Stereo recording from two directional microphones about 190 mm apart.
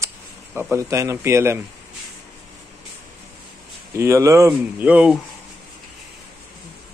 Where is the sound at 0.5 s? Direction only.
15° right (ahead or behind).